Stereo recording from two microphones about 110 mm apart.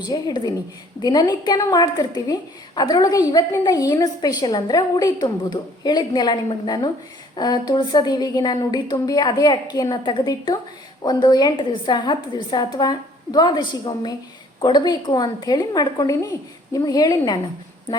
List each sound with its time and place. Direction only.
0.0 s a woman's voice: 40° left (ahead or behind)